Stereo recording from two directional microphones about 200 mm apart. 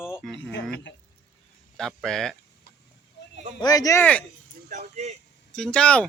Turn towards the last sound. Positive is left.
turn(degrees=5)  # may be behind; listen again after turning